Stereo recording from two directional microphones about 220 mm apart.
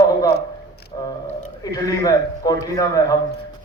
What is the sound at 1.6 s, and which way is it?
A man's voice, 15° left (ahead or behind).